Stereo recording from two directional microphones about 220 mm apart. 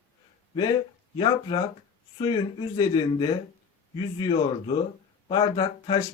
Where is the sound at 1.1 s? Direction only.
20° left (ahead or behind).